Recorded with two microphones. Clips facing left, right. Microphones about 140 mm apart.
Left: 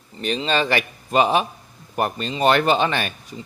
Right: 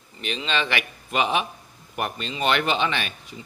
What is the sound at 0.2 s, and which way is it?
Speech, 40° left (ahead or behind).